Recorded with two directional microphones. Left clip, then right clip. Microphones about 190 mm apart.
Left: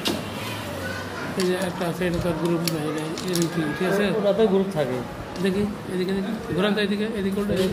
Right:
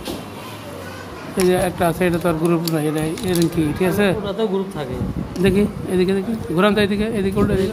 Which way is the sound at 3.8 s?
50° right (ahead or behind).